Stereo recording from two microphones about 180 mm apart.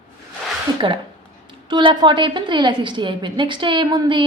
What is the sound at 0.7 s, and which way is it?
A woman's voice, 25° right (ahead or behind).